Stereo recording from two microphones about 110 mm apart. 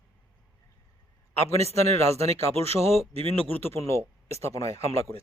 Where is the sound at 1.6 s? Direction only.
70° right (ahead or behind).